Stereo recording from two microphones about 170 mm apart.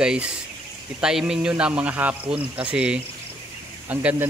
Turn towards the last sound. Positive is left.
turn(degrees=-10)  # may be behind; listen again after turning